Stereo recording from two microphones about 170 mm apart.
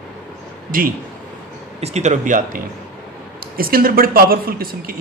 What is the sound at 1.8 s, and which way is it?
Speech, 40° right (ahead or behind).